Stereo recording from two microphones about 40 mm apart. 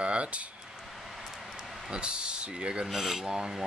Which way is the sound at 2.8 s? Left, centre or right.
Centre.